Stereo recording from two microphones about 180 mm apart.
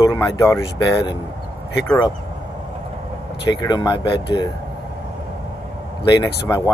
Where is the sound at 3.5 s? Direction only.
20° left (ahead or behind).